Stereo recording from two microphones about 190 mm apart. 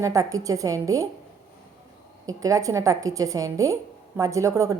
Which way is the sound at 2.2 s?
15° right (ahead or behind).